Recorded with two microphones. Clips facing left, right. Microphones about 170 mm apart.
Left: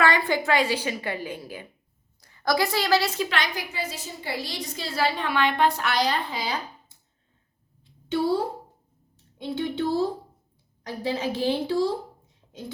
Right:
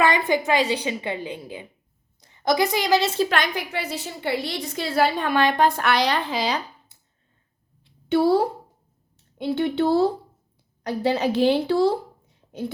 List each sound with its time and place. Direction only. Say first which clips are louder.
0.0 s a woman's voice: right 2 dB; 20° right (ahead or behind)
3.2 s a woman's voice: right 4 dB; 50° right (ahead or behind); by 6.9 s 90° right
8.1 s a woman's voice: right 5 dB; 65° right (ahead or behind)